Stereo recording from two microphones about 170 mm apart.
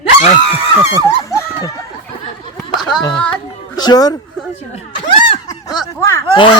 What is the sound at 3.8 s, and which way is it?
Speech, 25° left (ahead or behind).